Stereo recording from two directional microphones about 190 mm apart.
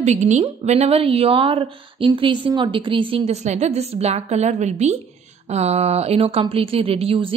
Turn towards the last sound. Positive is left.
turn(degrees=-30)  # may be behind; listen again after turning